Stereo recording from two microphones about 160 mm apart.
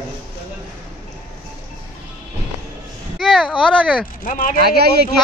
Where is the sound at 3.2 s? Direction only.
Centre (ahead or behind).